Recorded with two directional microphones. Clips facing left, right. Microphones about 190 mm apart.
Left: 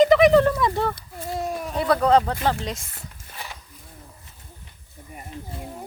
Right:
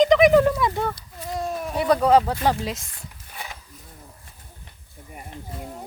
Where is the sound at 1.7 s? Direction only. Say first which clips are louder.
Right 1 dB; 10° right (ahead or behind).